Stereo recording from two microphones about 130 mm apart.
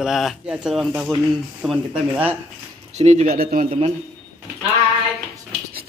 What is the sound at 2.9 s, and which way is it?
Speech, 60° right (ahead or behind).